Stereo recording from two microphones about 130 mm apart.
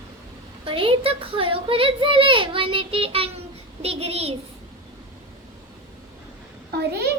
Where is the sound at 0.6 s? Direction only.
45° right (ahead or behind).